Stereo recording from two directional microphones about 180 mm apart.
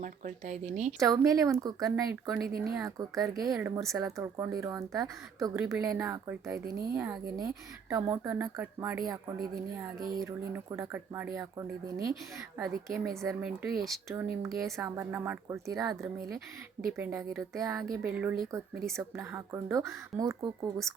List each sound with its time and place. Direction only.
0.0 s speech: 40° right (ahead or behind)
0.9 s speech: 20° right (ahead or behind)
12.5 s speech: centre (ahead or behind)
14.1 s speech: 15° right (ahead or behind)
17.0 s speech: 15° right (ahead or behind)
18.1 s speech: 10° right (ahead or behind)